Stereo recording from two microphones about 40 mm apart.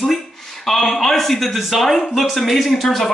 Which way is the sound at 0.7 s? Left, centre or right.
Centre.